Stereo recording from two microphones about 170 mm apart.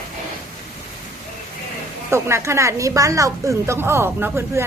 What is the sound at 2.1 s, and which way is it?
Speech, 15° right (ahead or behind).